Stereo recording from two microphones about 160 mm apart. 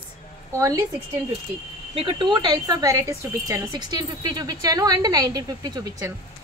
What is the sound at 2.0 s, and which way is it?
A woman's voice, 30° right (ahead or behind).